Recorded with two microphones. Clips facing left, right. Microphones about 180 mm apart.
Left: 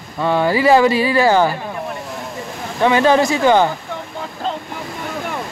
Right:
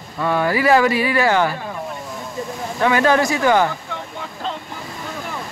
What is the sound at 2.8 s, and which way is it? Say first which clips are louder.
Speech: left 3 dB; 25° left (ahead or behind).